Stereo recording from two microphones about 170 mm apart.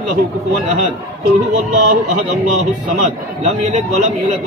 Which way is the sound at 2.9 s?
45° right (ahead or behind).